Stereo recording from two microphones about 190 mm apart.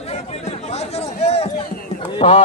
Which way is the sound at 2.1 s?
30° left (ahead or behind).